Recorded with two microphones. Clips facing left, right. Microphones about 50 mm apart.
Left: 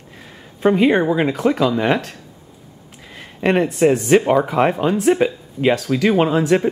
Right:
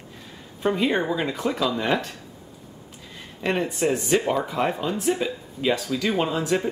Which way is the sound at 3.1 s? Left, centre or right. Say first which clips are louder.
Left 8 dB; left.